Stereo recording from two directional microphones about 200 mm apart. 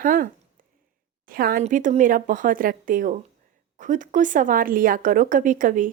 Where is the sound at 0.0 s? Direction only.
45° right (ahead or behind).